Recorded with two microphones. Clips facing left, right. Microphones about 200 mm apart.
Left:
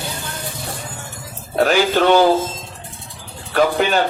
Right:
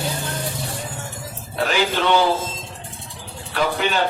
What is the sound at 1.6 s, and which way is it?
Speech, 45° left (ahead or behind).